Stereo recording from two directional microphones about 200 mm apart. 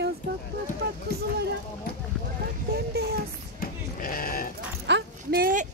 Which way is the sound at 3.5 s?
45° left (ahead or behind).